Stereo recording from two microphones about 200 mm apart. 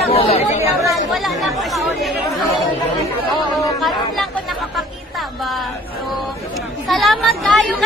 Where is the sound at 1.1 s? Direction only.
Centre (ahead or behind).